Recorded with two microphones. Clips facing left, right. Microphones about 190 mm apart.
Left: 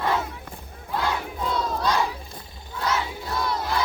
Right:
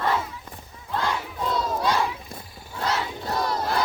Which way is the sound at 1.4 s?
Centre (ahead or behind).